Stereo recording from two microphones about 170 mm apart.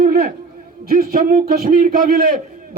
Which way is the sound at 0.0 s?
55° right (ahead or behind).